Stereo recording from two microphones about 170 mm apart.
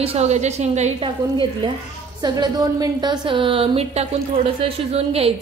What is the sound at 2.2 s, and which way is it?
A woman's voice, 25° right (ahead or behind).